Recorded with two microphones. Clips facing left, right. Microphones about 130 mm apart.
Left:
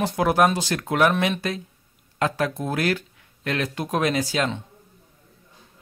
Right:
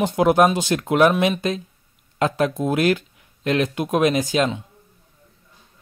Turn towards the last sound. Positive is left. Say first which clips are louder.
# right 4 dB
turn(degrees=-20)  # may be behind; listen again after turning